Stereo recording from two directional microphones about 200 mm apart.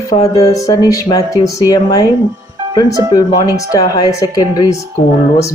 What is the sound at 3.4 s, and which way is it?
Speech, 20° left (ahead or behind).